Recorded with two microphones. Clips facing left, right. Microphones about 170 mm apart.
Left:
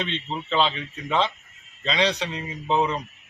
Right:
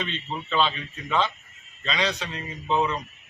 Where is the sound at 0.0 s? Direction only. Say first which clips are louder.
Left 2 dB; 25° left (ahead or behind).